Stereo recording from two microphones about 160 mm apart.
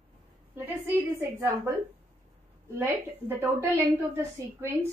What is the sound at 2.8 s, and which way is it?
A woman's voice, 15° right (ahead or behind).